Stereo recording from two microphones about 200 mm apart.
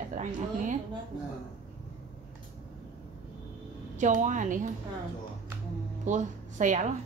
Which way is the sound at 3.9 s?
40° right (ahead or behind).